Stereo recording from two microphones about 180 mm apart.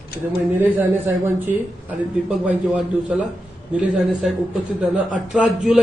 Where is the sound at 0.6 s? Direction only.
10° right (ahead or behind).